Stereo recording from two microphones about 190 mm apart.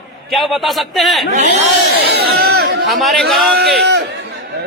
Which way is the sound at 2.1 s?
55° right (ahead or behind).